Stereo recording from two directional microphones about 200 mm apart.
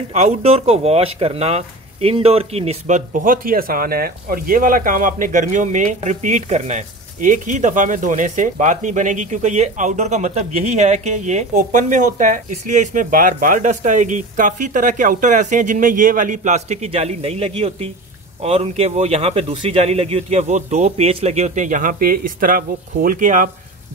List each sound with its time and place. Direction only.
0.1 s speech: 30° right (ahead or behind)